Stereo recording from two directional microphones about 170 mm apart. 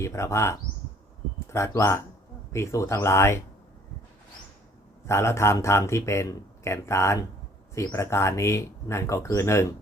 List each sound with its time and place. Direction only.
0.0 s speech: 15° left (ahead or behind)
5.0 s speech: 15° left (ahead or behind)